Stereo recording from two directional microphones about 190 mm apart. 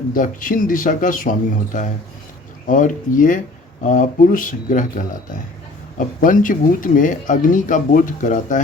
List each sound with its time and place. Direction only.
0.1 s speech: 45° left (ahead or behind)